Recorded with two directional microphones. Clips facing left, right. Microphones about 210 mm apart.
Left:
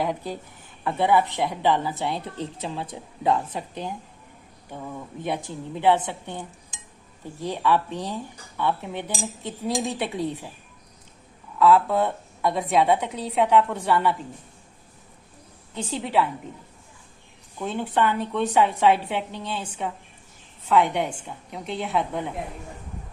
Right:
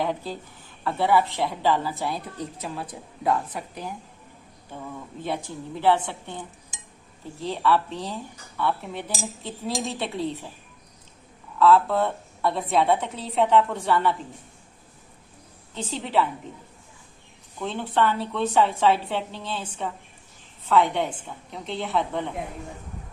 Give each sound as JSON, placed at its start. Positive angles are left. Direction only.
{"t": 0.0, "sound": "a woman's voice", "side_deg": 15}
{"t": 5.2, "sound": "a woman's voice", "side_deg": 20}
{"t": 7.4, "sound": "a woman's voice", "side_deg": 15}
{"t": 9.7, "sound": "speech", "side_deg": 0}
{"t": 11.6, "sound": "a woman's voice", "side_deg": 15}
{"t": 15.7, "sound": "a woman's voice", "side_deg": 10}
{"t": 17.6, "sound": "a woman's voice", "side_deg": 15}